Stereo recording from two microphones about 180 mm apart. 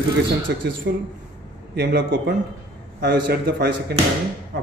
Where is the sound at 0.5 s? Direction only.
65° right (ahead or behind).